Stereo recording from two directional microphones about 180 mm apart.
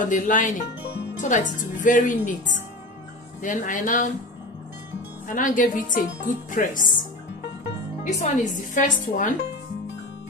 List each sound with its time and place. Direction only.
0.0 s a woman's voice: 45° left (ahead or behind)
5.3 s a woman's voice: 45° left (ahead or behind)